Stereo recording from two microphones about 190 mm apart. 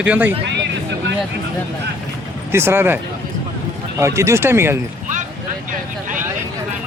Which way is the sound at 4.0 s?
15° right (ahead or behind).